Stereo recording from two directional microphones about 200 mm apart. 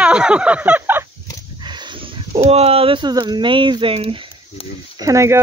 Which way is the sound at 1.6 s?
20° right (ahead or behind).